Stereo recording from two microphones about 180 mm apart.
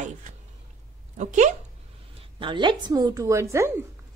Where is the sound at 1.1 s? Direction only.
40° right (ahead or behind).